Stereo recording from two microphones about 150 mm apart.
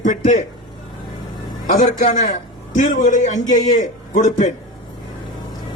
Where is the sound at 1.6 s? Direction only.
60° left (ahead or behind).